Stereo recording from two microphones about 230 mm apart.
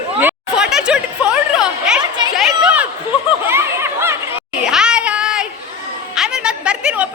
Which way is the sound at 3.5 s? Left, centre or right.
Centre.